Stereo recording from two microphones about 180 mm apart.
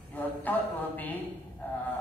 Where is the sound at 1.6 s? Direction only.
10° left (ahead or behind).